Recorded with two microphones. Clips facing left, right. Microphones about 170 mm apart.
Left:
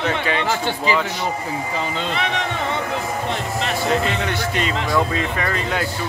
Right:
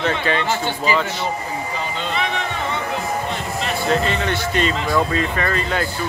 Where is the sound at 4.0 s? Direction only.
10° left (ahead or behind).